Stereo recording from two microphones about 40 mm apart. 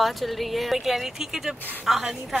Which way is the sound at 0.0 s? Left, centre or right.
Centre.